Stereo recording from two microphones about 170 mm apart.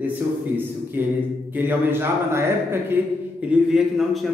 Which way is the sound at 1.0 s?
10° right (ahead or behind).